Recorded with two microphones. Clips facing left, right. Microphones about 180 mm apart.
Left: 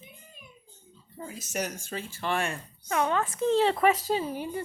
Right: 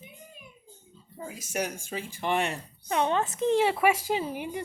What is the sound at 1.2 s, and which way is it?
Speech, 10° right (ahead or behind).